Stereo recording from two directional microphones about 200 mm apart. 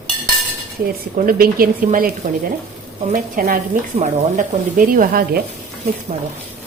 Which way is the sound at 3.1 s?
40° right (ahead or behind).